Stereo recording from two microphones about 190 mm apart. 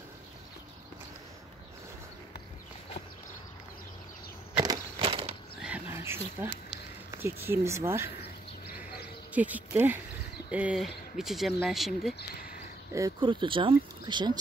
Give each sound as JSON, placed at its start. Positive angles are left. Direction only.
{"t": 4.6, "sound": "walk", "side_deg": -25}
{"t": 5.6, "sound": "a sound", "side_deg": -10}
{"t": 7.1, "sound": "speech", "side_deg": -15}
{"t": 8.7, "sound": "insect", "side_deg": -10}
{"t": 10.5, "sound": "speech", "side_deg": -5}
{"t": 12.2, "sound": "speech", "side_deg": 50}
{"t": 12.9, "sound": "speech", "side_deg": -20}